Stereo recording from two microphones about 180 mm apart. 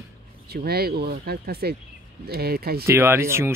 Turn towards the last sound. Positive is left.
turn(degrees=-15)  # may be behind; listen again after turning